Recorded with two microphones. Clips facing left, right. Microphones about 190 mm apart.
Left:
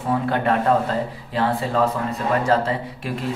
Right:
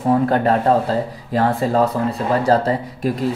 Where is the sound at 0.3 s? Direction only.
35° right (ahead or behind).